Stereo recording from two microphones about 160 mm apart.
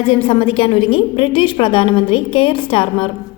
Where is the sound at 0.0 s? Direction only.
35° left (ahead or behind).